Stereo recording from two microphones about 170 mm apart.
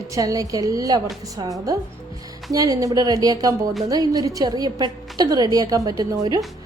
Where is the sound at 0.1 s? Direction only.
20° right (ahead or behind).